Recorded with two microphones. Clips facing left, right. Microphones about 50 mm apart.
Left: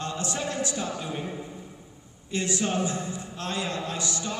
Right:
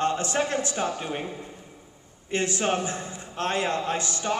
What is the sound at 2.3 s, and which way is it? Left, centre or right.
Speech, right.